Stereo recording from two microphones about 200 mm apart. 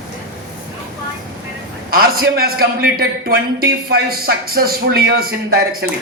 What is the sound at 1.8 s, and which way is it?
A man's voice, 45° right (ahead or behind).